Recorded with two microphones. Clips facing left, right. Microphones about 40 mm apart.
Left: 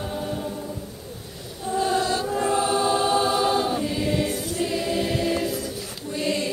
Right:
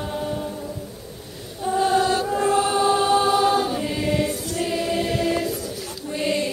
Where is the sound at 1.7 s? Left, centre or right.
Centre.